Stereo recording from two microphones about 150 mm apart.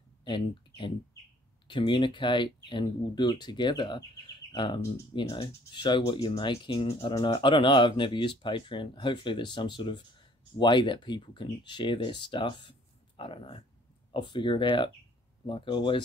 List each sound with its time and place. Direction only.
0.2 s speech: 35° left (ahead or behind)